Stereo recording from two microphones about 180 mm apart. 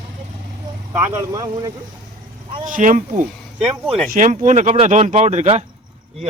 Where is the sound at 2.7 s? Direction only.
45° right (ahead or behind).